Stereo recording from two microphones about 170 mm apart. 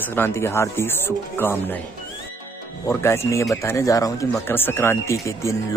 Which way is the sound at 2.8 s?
15° left (ahead or behind).